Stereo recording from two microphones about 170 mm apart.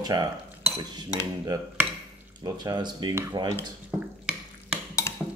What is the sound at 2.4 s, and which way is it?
Speech, 25° right (ahead or behind).